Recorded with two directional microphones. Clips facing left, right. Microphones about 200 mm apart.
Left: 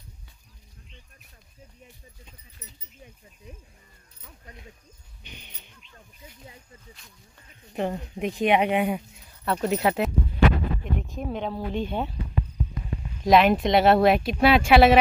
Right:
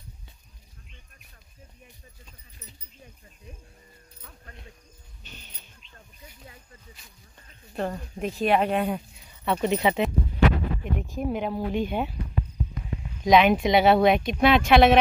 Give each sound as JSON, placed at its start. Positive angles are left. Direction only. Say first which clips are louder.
{"t": 5.2, "sound": "speech", "louder": "left 2 dB", "side_deg": 15}
{"t": 7.7, "sound": "speech", "louder": "left 2 dB", "side_deg": 15}
{"t": 9.2, "sound": "speech", "louder": "right 2 dB", "side_deg": 0}
{"t": 13.2, "sound": "speech", "louder": "even", "side_deg": 0}